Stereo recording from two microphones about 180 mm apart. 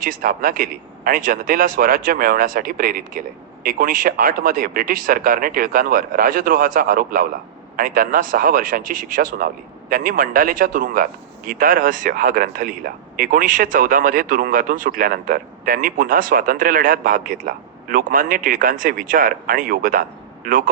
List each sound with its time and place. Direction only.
0.0 s speech: 50° right (ahead or behind)